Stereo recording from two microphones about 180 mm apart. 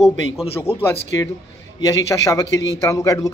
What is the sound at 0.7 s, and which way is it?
Speech, 35° left (ahead or behind).